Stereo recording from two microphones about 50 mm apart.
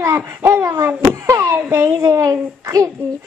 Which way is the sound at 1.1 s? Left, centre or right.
Right.